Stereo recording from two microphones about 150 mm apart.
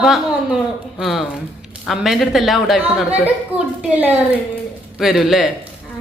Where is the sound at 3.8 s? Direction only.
10° right (ahead or behind).